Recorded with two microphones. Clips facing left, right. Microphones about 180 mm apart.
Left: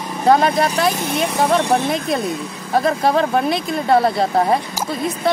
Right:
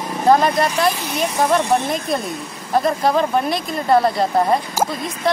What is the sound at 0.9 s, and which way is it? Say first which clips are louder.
Speech: left 2 dB; 50° left (ahead or behind).